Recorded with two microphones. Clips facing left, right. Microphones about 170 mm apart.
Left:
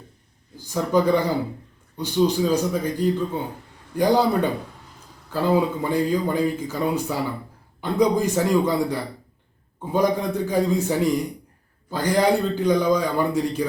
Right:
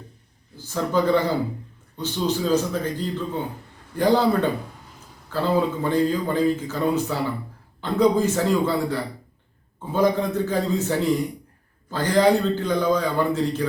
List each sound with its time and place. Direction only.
0.5 s speech: 15° left (ahead or behind)